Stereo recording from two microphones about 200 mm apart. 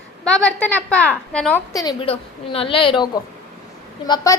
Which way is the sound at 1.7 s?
25° left (ahead or behind).